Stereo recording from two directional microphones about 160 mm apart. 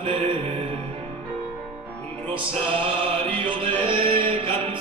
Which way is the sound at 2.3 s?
35° right (ahead or behind).